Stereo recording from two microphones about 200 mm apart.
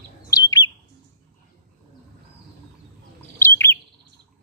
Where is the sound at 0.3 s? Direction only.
20° left (ahead or behind).